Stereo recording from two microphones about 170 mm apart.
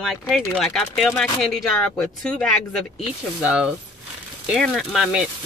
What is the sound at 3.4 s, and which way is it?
Speech, 5° right (ahead or behind).